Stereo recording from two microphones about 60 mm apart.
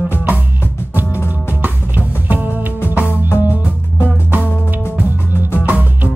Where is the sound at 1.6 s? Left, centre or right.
Right.